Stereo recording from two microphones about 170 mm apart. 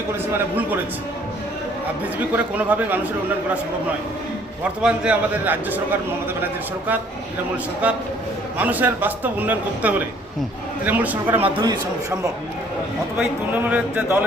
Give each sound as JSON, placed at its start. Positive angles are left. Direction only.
{"t": 0.3, "sound": "a man's voice", "side_deg": -10}
{"t": 2.1, "sound": "a man's voice", "side_deg": -10}
{"t": 4.8, "sound": "a man's voice", "side_deg": -5}
{"t": 11.5, "sound": "a man's voice", "side_deg": -25}
{"t": 13.7, "sound": "a man's voice", "side_deg": -10}